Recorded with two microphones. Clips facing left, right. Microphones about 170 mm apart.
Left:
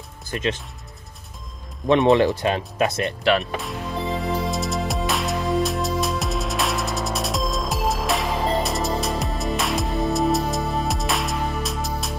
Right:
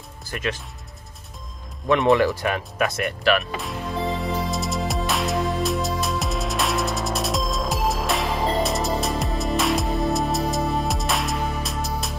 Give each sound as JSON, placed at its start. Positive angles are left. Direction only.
{"t": 0.3, "sound": "speech", "side_deg": 20}
{"t": 1.9, "sound": "speech", "side_deg": 20}
{"t": 3.5, "sound": "music", "side_deg": 0}